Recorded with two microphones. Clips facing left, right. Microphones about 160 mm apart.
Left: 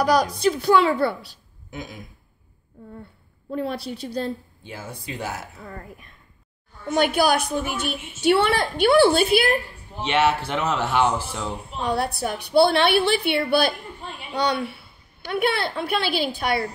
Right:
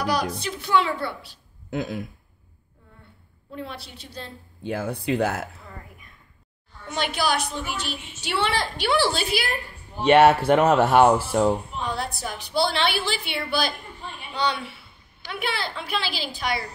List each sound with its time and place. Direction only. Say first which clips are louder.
0.0 s a woman's voice: left 6 dB; 40° left (ahead or behind)
1.7 s speech: right 8 dB; 65° right (ahead or behind)
3.5 s a woman's voice: left 9 dB; 40° left (ahead or behind)
4.6 s speech: right 10 dB; 60° right (ahead or behind)
6.9 s a woman's voice: left 6 dB; 55° left (ahead or behind)
10.0 s speech: right 6 dB; 55° right (ahead or behind)
11.8 s a woman's voice: left 5 dB; 65° left (ahead or behind)